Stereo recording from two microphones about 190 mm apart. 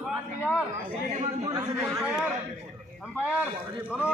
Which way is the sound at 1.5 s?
15° right (ahead or behind).